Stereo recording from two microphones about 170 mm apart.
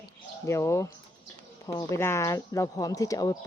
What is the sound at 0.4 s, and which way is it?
A woman's voice, 15° left (ahead or behind).